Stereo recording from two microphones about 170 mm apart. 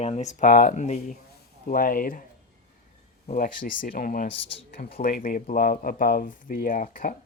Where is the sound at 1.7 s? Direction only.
55° left (ahead or behind).